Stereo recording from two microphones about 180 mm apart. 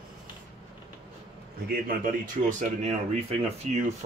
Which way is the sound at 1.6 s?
50° right (ahead or behind).